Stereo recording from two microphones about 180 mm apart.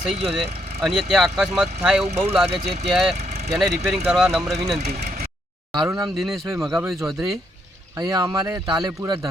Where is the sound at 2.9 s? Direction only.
5° right (ahead or behind).